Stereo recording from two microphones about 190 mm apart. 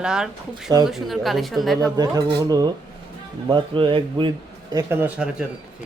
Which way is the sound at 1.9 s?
20° right (ahead or behind).